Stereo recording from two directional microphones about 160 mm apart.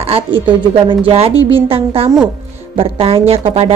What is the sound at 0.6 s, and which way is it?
A woman's voice, 30° right (ahead or behind).